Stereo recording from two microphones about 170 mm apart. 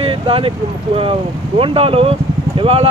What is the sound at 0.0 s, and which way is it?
Speech, 30° right (ahead or behind).